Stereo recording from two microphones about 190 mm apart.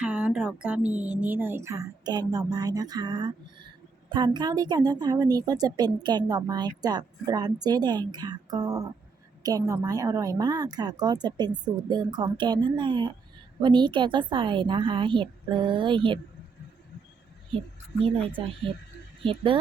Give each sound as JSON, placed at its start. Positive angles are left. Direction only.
{"t": 0.0, "sound": "a woman's voice", "side_deg": -5}
{"t": 18.0, "sound": "a woman's voice", "side_deg": -25}